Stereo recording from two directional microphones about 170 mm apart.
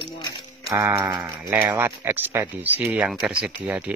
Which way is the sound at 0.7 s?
15° right (ahead or behind).